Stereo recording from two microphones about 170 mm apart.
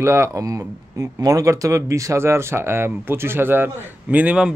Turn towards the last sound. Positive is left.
turn(degrees=-5)  # may be behind; listen again after turning